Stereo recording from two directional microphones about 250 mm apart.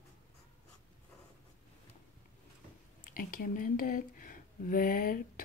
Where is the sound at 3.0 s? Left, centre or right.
Left.